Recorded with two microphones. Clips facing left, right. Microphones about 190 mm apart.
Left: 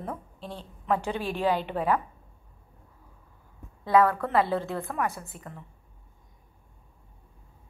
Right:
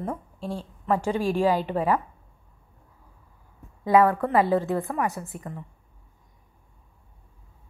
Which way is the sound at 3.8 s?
15° right (ahead or behind).